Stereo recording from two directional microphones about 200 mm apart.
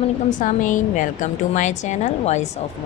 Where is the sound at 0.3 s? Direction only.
40° left (ahead or behind).